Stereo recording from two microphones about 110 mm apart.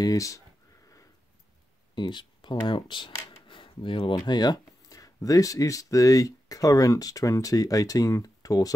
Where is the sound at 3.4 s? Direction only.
50° left (ahead or behind).